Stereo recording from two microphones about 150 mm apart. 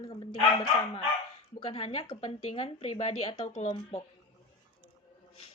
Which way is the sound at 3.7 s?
30° left (ahead or behind).